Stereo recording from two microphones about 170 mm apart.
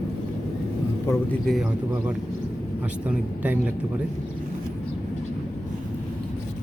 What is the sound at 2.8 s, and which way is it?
Speech, 10° right (ahead or behind).